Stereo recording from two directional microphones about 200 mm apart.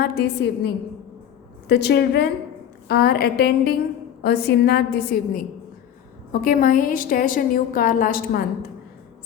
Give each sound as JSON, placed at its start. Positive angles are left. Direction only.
{"t": 0.0, "sound": "a woman's voice", "side_deg": 55}
{"t": 6.4, "sound": "a woman's voice", "side_deg": 45}